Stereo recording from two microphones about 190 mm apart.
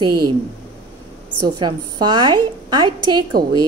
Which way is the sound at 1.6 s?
25° right (ahead or behind).